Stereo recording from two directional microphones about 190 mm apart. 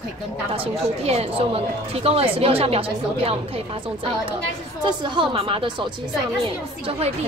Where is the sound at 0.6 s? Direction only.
35° right (ahead or behind).